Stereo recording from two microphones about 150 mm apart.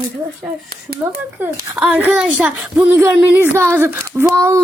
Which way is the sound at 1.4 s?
20° right (ahead or behind).